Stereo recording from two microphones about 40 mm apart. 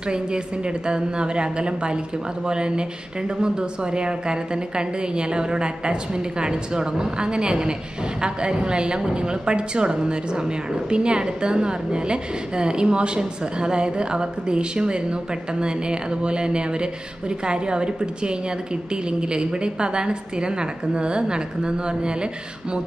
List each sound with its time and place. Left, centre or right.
0.8 s a woman's voice: right